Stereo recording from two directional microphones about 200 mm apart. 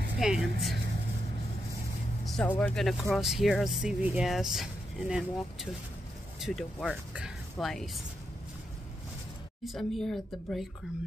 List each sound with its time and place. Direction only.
0.2 s speech: centre (ahead or behind)
2.3 s speech: 10° left (ahead or behind)
9.7 s speech: centre (ahead or behind)